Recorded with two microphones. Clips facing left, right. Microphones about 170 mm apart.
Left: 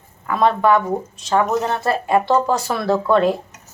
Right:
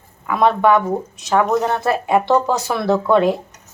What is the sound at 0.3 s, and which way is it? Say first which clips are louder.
A woman's voice: right 1 dB; 10° right (ahead or behind).